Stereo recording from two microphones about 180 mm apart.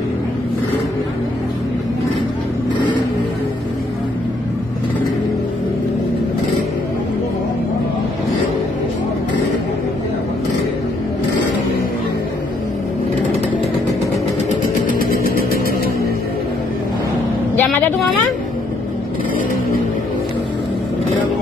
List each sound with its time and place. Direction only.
14.9 s a sound: 50° left (ahead or behind)
15.3 s vehicle: 55° left (ahead or behind)
17.6 s vehicle: 10° left (ahead or behind)